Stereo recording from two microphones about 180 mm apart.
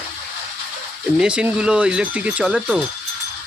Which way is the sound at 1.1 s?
5° right (ahead or behind).